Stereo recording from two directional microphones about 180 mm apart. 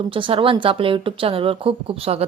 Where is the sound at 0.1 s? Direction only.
30° right (ahead or behind).